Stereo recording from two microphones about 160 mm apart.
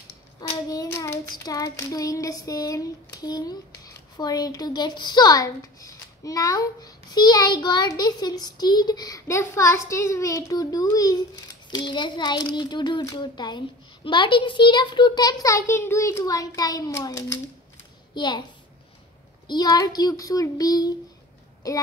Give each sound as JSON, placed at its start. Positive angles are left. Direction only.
{"t": 0.4, "sound": "hands", "side_deg": 20}
{"t": 18.1, "sound": "a child's voice", "side_deg": 30}
{"t": 19.4, "sound": "hands", "side_deg": 25}
{"t": 21.6, "sound": "speech", "side_deg": 20}